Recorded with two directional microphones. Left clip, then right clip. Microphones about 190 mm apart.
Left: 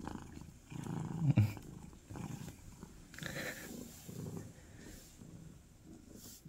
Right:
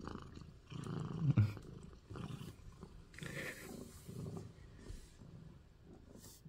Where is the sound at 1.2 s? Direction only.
20° left (ahead or behind).